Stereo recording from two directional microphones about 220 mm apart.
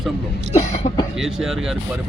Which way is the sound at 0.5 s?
30° left (ahead or behind).